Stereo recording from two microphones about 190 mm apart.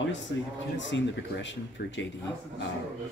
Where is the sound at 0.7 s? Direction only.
70° left (ahead or behind).